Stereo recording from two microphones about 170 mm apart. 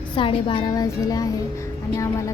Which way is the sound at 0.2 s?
30° left (ahead or behind).